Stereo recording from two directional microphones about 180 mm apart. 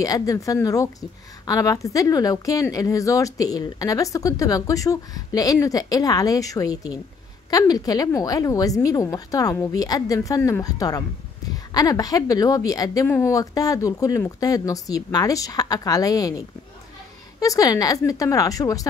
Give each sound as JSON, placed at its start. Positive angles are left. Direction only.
{"t": 0.0, "sound": "a woman's voice", "side_deg": 20}